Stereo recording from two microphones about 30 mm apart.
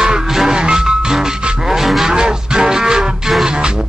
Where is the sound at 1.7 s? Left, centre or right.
Centre.